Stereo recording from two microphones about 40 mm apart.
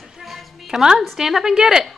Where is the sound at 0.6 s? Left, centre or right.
Centre.